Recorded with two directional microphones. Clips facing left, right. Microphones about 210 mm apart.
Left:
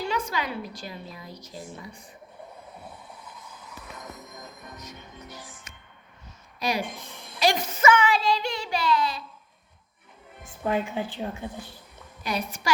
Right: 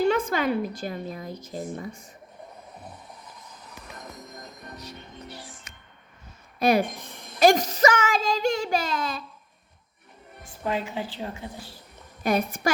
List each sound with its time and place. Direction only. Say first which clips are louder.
0.0 s speech: right 7 dB; 55° right (ahead or behind)
4.8 s music: right 2 dB; 35° right (ahead or behind)
6.6 s speech: right 7 dB; 55° right (ahead or behind)
10.4 s a woman's voice: left 2 dB; 15° left (ahead or behind)
12.2 s speech: right 6 dB; 55° right (ahead or behind)